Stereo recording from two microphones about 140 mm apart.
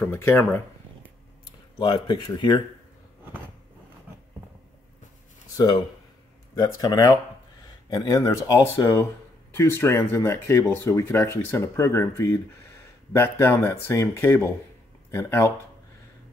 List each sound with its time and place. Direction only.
0.1 s speech: 15° left (ahead or behind)
2.0 s speech: 30° left (ahead or behind)
5.6 s speech: 30° left (ahead or behind)